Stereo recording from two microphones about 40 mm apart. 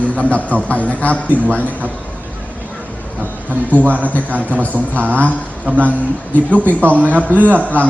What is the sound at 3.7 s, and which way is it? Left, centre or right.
Speech, right.